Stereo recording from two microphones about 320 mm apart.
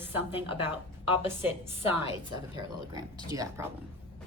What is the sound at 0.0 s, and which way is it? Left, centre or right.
A woman's voice, centre.